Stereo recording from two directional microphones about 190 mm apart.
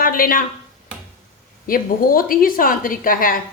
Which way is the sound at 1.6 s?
50° left (ahead or behind).